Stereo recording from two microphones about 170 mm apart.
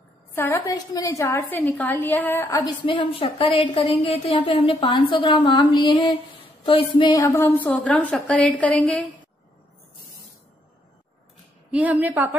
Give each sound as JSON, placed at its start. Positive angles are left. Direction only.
{"t": 0.3, "sound": "a woman's voice", "side_deg": 15}
{"t": 7.2, "sound": "a woman's voice", "side_deg": 15}
{"t": 11.7, "sound": "a woman's voice", "side_deg": -10}